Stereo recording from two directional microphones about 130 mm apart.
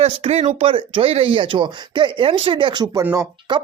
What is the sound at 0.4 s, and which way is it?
Speech, 40° right (ahead or behind).